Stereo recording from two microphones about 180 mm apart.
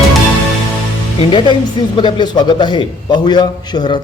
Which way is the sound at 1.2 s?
30° left (ahead or behind).